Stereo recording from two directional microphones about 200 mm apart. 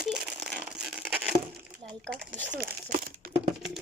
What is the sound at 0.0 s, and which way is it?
Crumpling, 5° right (ahead or behind).